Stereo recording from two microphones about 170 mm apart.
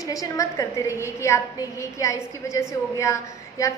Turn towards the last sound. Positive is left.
turn(degrees=15)  # may be behind; listen again after turning